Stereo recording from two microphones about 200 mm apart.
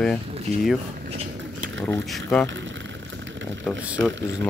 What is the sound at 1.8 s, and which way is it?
Speech, 5° left (ahead or behind).